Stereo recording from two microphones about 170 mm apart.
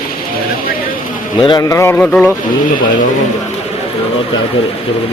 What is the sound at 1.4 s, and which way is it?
Speech, 20° left (ahead or behind).